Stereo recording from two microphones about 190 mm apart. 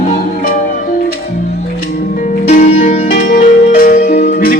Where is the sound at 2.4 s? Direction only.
35° left (ahead or behind).